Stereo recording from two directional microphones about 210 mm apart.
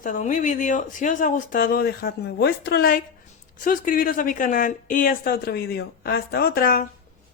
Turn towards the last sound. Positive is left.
turn(degrees=45)  # may be behind; listen again after turning